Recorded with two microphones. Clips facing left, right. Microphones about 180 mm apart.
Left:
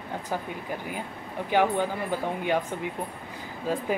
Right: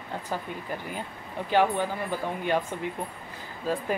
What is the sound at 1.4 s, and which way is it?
Speech, 15° left (ahead or behind).